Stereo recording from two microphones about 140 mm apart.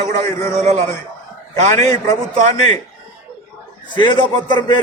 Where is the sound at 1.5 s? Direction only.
25° left (ahead or behind).